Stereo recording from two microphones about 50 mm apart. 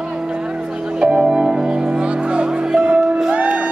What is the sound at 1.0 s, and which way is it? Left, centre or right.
Music, centre.